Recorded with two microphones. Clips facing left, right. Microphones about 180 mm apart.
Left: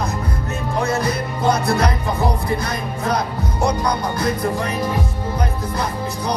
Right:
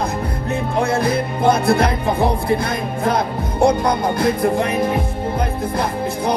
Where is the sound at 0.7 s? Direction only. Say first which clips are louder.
Right 2 dB; 55° right (ahead or behind).